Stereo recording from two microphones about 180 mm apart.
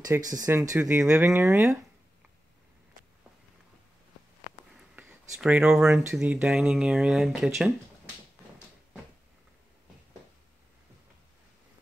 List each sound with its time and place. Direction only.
0.0 s speech: 20° right (ahead or behind)
4.9 s speech: centre (ahead or behind)